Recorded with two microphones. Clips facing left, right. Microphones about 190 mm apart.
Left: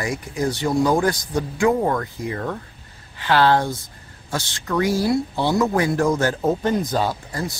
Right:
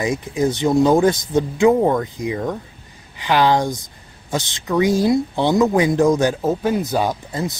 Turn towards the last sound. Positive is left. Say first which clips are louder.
# right 3 dB
turn(degrees=-20)  # may be behind; listen again after turning